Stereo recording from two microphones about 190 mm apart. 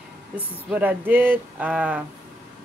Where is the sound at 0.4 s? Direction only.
5° right (ahead or behind).